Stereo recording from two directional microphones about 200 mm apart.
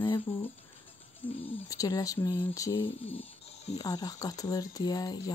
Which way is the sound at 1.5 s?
15° left (ahead or behind).